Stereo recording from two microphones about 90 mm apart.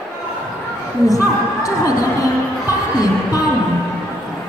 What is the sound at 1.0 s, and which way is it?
Speech, 40° left (ahead or behind).